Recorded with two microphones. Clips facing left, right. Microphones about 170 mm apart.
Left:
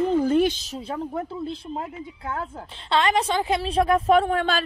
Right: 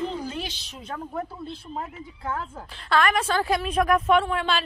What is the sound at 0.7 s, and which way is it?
Speech, 35° left (ahead or behind).